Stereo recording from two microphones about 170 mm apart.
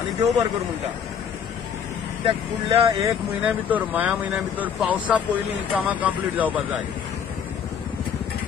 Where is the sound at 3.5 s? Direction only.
10° right (ahead or behind).